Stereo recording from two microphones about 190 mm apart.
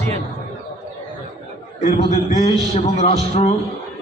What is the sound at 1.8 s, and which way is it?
A man's voice, 35° left (ahead or behind).